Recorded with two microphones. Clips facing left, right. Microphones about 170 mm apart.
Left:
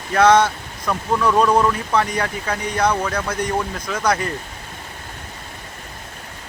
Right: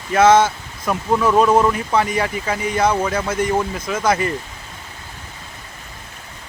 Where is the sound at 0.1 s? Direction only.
5° right (ahead or behind).